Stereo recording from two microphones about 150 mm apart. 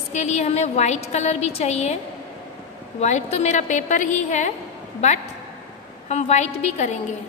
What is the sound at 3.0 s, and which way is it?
A woman's voice, 50° left (ahead or behind).